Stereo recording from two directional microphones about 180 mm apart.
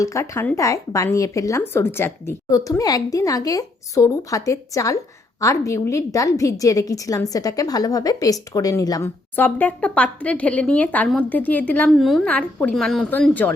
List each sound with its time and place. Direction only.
0.0 s a woman's voice: 15° left (ahead or behind)